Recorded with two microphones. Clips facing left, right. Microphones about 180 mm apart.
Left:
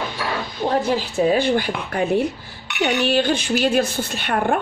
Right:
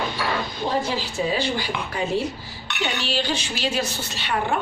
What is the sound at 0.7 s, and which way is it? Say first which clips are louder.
A woman's voice: left 6 dB; 55° left (ahead or behind).